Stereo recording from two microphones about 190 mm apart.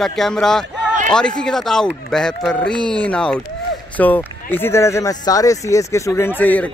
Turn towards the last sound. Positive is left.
turn(degrees=10)  # may be behind; listen again after turning